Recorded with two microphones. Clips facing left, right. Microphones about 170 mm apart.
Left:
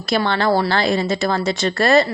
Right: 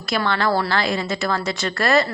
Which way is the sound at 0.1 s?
30° left (ahead or behind).